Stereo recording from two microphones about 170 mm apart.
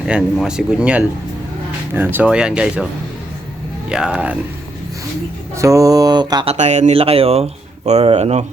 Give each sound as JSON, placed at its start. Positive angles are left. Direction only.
{"t": 0.1, "sound": "speech", "side_deg": -5}
{"t": 2.1, "sound": "speech", "side_deg": -5}
{"t": 3.8, "sound": "speech", "side_deg": -5}
{"t": 5.5, "sound": "mantra", "side_deg": -20}
{"t": 6.5, "sound": "speech", "side_deg": -45}